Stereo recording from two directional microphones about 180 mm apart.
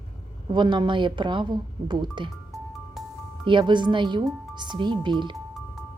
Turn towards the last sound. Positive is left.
turn(degrees=-25)  # may be behind; listen again after turning